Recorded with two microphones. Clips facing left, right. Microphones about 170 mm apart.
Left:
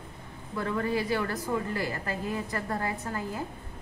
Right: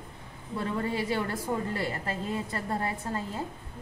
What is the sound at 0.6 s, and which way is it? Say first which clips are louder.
A woman's voice: left 1 dB; 25° right (ahead or behind).